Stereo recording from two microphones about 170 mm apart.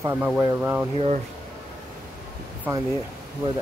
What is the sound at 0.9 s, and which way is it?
Speech, 35° right (ahead or behind).